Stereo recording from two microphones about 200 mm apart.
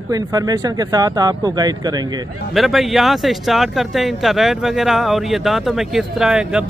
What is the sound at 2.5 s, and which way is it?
A man's voice, centre (ahead or behind).